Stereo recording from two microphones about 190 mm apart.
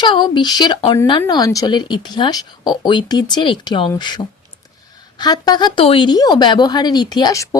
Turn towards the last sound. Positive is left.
turn(degrees=20)  # may be behind; listen again after turning